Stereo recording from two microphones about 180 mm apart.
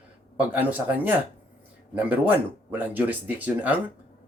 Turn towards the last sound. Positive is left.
turn(degrees=-10)  # may be behind; listen again after turning